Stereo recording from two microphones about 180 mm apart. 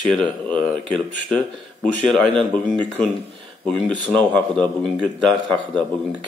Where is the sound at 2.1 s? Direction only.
5° left (ahead or behind).